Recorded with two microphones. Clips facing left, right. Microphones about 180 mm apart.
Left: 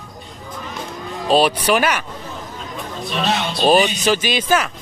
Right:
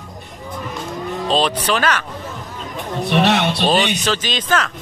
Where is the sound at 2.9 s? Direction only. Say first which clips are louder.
Right 6 dB; 70° right (ahead or behind).